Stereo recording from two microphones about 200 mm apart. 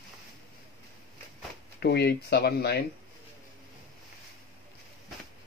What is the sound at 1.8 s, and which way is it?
Speech, 55° left (ahead or behind).